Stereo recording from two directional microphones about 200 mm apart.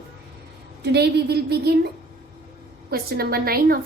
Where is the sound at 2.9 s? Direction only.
50° right (ahead or behind).